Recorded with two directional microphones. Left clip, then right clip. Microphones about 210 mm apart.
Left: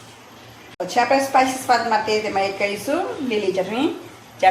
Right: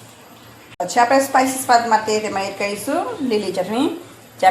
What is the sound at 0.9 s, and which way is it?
A woman's voice, 20° right (ahead or behind).